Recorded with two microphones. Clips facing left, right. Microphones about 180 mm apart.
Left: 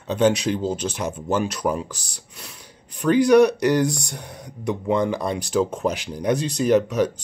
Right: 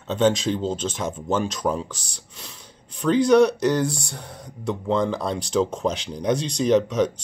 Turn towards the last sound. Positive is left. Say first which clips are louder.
# left 1 dB
turn(degrees=10)  # may be behind; listen again after turning